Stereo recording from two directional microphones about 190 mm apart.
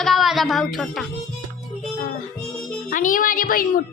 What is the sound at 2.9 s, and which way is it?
Speech, 45° left (ahead or behind).